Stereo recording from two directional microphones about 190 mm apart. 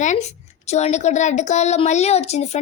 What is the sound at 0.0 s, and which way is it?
A woman's voice, 40° left (ahead or behind).